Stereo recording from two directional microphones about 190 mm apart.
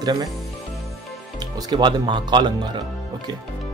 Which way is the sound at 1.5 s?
20° right (ahead or behind).